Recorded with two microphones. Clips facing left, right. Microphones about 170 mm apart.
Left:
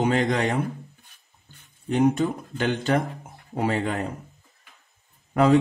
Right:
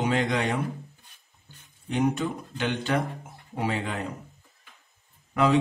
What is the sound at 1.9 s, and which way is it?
A man's voice, 45° left (ahead or behind).